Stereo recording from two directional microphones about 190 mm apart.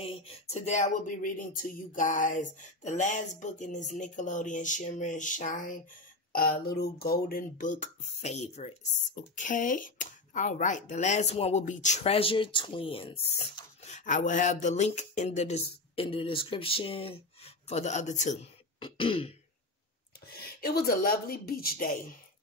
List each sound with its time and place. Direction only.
0.0 s a sound: 30° left (ahead or behind)
0.7 s speech: 40° left (ahead or behind)
18.8 s throat clearing: 25° left (ahead or behind)
20.2 s speech: 55° left (ahead or behind)